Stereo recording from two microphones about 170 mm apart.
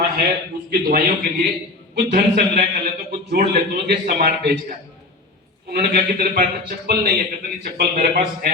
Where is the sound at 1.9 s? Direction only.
65° right (ahead or behind).